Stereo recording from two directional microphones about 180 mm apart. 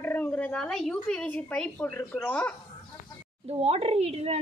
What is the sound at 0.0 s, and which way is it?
Speech, 10° left (ahead or behind).